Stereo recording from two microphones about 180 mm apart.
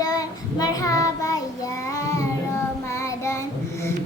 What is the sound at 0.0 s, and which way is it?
Child singing, 20° left (ahead or behind).